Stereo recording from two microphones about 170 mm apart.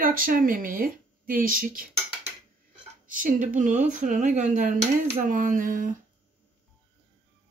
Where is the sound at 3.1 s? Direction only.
50° right (ahead or behind).